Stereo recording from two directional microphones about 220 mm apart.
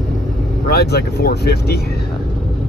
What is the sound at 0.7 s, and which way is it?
Speech, 45° left (ahead or behind).